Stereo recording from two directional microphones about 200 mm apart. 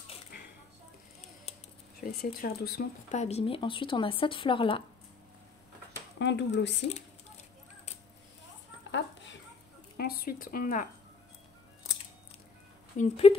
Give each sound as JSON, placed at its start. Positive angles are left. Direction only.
{"t": 2.0, "sound": "speech", "side_deg": 50}
{"t": 3.1, "sound": "speech", "side_deg": 35}
{"t": 6.1, "sound": "speech", "side_deg": 60}
{"t": 8.9, "sound": "a sound", "side_deg": 65}
{"t": 9.9, "sound": "speech", "side_deg": 50}
{"t": 12.9, "sound": "speech", "side_deg": 35}